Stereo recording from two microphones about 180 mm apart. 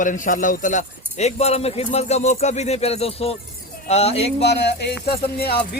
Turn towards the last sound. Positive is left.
turn(degrees=60)  # may be behind; listen again after turning